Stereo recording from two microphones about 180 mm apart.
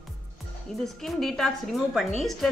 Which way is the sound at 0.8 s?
Centre (ahead or behind).